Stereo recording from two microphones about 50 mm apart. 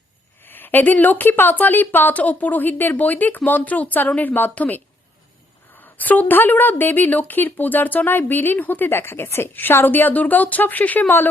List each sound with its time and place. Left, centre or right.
0.4 s a woman's voice: left
2.1 s a woman's voice: left